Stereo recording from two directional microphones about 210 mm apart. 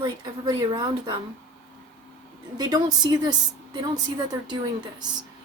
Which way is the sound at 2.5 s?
20° right (ahead or behind).